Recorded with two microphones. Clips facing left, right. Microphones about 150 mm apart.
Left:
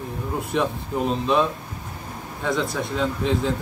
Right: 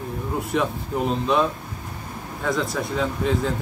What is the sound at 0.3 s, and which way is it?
A man's voice, centre (ahead or behind).